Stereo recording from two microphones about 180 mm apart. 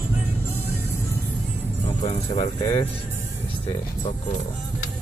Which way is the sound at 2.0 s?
25° left (ahead or behind).